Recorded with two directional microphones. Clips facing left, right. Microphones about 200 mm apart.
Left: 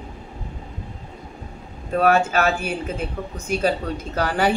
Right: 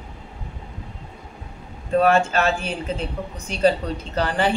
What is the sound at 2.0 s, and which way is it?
A woman's voice, 5° left (ahead or behind).